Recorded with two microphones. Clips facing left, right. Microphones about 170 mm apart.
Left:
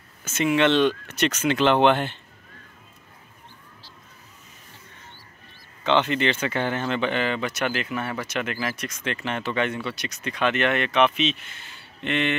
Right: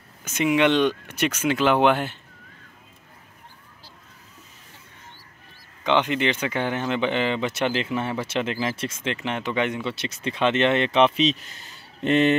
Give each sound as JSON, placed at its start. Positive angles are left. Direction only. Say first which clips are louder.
{"t": 0.2, "sound": "speech", "louder": "right 1 dB", "side_deg": -15}
{"t": 5.9, "sound": "speech", "louder": "even", "side_deg": -15}